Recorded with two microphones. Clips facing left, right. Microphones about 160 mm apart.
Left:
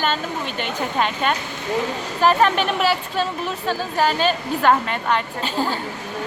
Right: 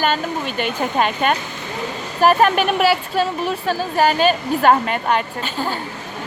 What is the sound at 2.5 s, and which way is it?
Speech, 10° right (ahead or behind).